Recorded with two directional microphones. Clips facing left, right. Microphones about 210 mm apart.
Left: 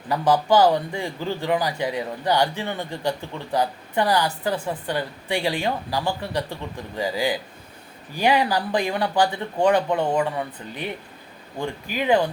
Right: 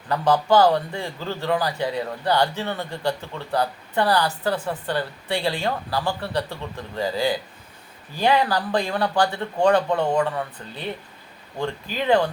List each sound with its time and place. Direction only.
0.1 s a man's voice: 10° left (ahead or behind)